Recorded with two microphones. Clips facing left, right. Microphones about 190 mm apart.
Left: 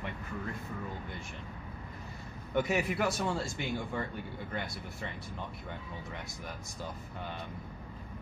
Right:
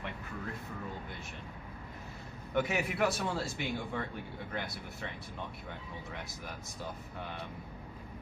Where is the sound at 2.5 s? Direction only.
Centre (ahead or behind).